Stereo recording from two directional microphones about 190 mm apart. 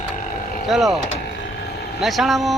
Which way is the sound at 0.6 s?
Centre (ahead or behind).